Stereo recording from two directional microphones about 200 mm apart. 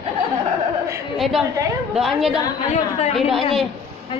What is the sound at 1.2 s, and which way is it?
A woman's voice, centre (ahead or behind).